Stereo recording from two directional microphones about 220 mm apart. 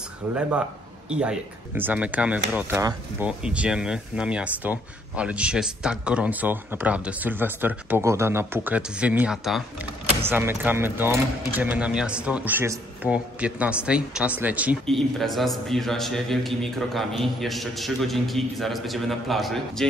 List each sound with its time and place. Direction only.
0.3 s speech: 5° right (ahead or behind)